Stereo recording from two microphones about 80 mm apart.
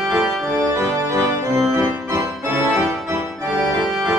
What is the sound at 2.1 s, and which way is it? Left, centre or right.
Organ, right.